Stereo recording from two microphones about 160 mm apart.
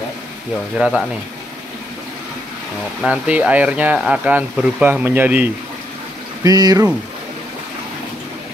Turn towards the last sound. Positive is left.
turn(degrees=-25)  # may be behind; listen again after turning